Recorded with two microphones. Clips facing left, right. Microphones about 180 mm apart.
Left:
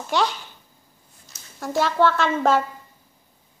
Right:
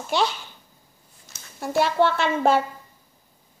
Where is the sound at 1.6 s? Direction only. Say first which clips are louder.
Even; 15° right (ahead or behind).